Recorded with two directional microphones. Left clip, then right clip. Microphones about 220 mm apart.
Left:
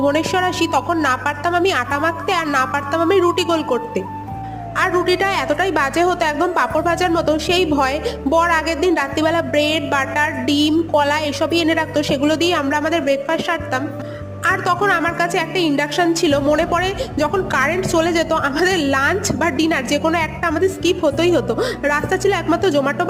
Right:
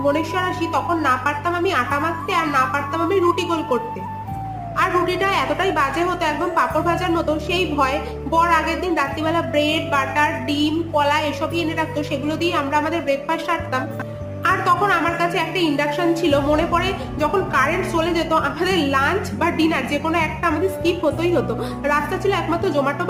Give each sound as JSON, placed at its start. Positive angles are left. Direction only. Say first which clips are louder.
{"t": 0.1, "sound": "a woman's voice", "louder": "left 3 dB", "side_deg": 40}
{"t": 4.8, "sound": "a woman's voice", "louder": "left 2 dB", "side_deg": 35}